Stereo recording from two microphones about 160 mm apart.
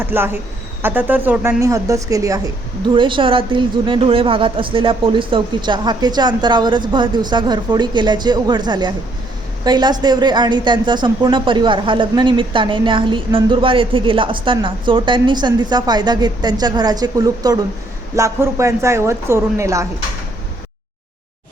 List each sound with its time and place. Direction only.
0.0 s speech: 15° right (ahead or behind)
2.9 s a woman's voice: 30° right (ahead or behind)